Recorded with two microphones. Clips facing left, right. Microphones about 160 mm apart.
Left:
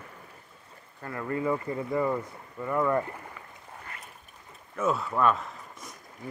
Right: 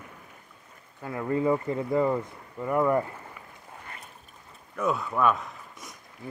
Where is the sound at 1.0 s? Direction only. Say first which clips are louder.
Right 4 dB; 15° right (ahead or behind).